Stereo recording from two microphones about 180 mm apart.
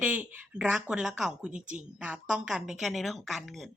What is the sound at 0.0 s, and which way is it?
A woman's voice, 10° right (ahead or behind).